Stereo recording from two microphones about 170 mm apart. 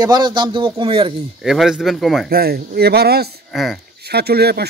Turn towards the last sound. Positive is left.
turn(degrees=-70)  # may be behind; listen again after turning